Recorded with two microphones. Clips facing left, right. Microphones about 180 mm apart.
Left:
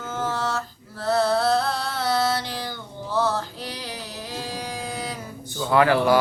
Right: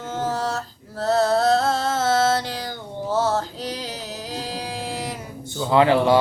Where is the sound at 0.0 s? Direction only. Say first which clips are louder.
Right 2 dB; 35° right (ahead or behind).